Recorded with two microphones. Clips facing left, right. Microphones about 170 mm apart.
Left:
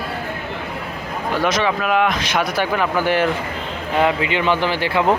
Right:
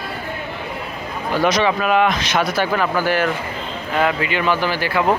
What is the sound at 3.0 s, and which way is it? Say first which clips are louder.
Speech: left 1 dB; 25° left (ahead or behind).